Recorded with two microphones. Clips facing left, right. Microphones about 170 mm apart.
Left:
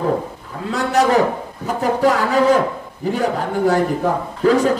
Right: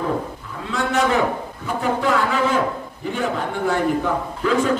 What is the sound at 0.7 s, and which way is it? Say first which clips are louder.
A man's voice: left 4 dB; 40° left (ahead or behind).